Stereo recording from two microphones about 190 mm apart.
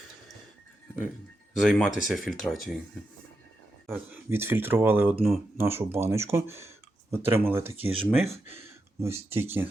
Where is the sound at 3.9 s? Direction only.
10° right (ahead or behind).